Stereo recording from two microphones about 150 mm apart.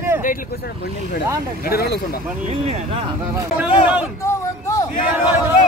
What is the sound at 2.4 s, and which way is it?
Speech, 45° right (ahead or behind).